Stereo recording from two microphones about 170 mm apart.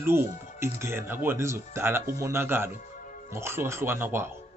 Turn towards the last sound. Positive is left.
turn(degrees=-15)  # may be behind; listen again after turning